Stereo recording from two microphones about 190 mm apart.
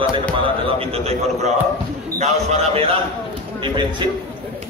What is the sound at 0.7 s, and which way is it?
A man's voice, 30° right (ahead or behind).